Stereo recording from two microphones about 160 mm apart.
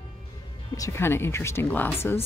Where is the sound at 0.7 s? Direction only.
20° left (ahead or behind).